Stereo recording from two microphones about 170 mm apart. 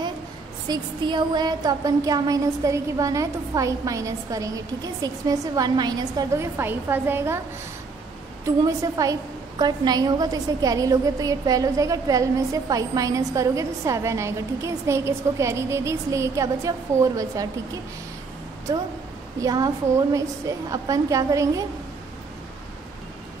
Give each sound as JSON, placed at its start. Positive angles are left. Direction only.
{"t": 0.7, "sound": "a woman's voice", "side_deg": -25}
{"t": 8.5, "sound": "a woman's voice", "side_deg": -20}
{"t": 19.4, "sound": "a woman's voice", "side_deg": -20}